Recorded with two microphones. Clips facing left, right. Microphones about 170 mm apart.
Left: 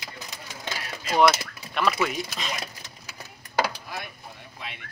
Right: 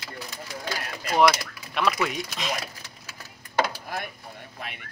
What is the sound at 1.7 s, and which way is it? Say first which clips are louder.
Speech: even; centre (ahead or behind).